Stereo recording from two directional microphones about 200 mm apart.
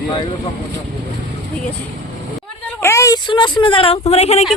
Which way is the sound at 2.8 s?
15° left (ahead or behind).